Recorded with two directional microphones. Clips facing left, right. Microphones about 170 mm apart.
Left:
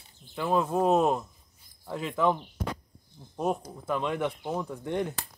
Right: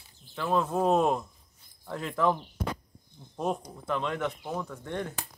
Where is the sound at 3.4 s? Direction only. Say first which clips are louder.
Left 2 dB; 5° left (ahead or behind).